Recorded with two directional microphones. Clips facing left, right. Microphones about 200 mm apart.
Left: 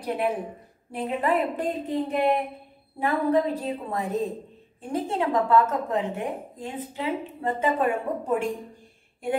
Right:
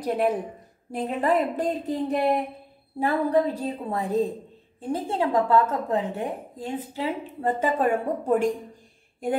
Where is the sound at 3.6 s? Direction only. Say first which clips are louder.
Right 1 dB; 30° right (ahead or behind).